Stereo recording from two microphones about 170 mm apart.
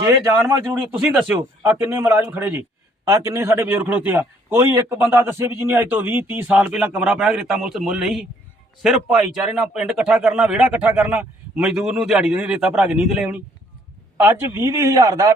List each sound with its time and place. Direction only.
0.1 s a man's voice: 15° right (ahead or behind)